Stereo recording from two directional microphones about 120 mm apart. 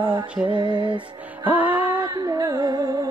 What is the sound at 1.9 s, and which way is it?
Music, 35° right (ahead or behind).